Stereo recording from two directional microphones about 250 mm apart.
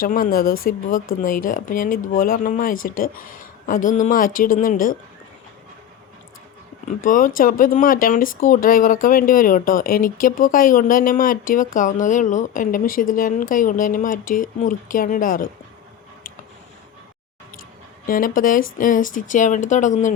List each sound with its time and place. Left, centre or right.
0.0 s speech: left
7.0 s speech: left
18.0 s speech: left